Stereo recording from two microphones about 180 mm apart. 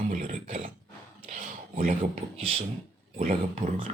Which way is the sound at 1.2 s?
45° right (ahead or behind).